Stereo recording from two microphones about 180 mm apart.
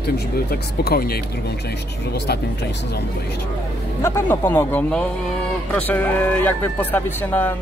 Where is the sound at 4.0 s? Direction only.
10° left (ahead or behind).